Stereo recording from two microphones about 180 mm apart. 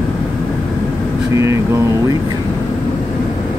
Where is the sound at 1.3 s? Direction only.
15° right (ahead or behind).